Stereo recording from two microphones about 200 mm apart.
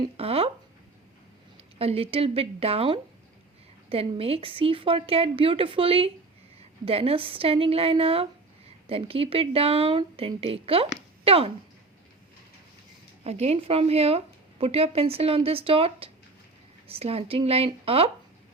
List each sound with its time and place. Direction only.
0.0 s speech: 30° right (ahead or behind)
1.8 s speech: 30° right (ahead or behind)
13.2 s a woman's voice: 30° right (ahead or behind)